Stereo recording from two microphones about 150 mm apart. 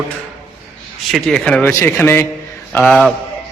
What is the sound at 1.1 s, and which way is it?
A man's voice, 5° left (ahead or behind).